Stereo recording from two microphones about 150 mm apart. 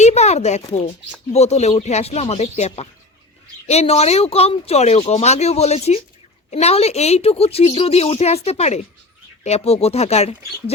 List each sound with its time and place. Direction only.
0.0 s a woman's voice: 45° left (ahead or behind)